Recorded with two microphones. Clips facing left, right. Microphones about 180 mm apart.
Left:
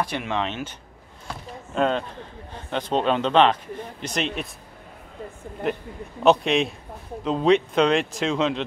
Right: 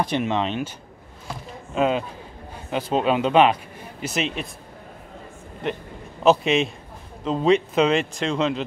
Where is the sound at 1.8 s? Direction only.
5° right (ahead or behind).